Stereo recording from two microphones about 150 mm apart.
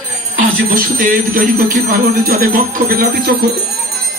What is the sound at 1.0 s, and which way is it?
Speech, 65° right (ahead or behind).